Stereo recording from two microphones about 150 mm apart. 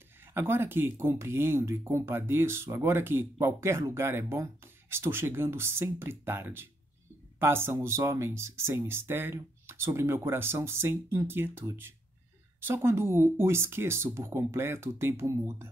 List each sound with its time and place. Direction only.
0.3 s speech: 15° right (ahead or behind)